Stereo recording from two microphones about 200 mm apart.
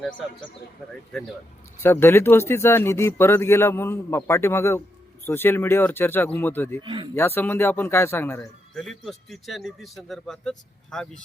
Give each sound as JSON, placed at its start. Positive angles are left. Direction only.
{"t": 1.1, "sound": "speech", "side_deg": 0}
{"t": 6.8, "sound": "speech", "side_deg": -25}
{"t": 7.2, "sound": "speech", "side_deg": 10}